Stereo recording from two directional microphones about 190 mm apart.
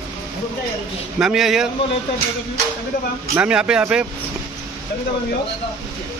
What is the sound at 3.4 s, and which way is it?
Speech, 5° right (ahead or behind).